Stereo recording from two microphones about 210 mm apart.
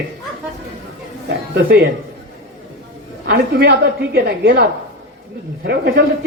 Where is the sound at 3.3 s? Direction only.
50° right (ahead or behind).